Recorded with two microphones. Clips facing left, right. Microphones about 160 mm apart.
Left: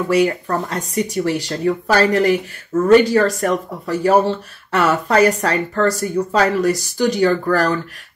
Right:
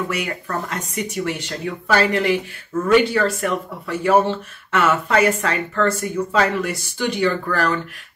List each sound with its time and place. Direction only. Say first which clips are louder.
0.1 s speech: left 9 dB; 30° left (ahead or behind)